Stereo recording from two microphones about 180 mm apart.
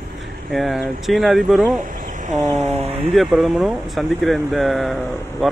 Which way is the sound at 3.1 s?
Centre (ahead or behind).